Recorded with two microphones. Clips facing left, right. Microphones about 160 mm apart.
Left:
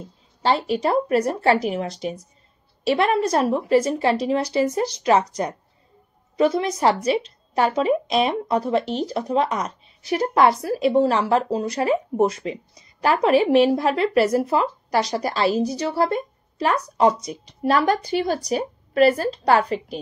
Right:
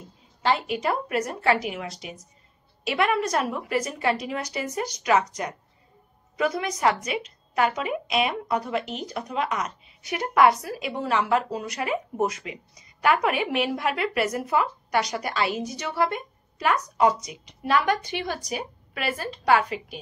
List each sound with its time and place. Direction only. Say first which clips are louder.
0.4 s speech: left 4 dB; 35° left (ahead or behind)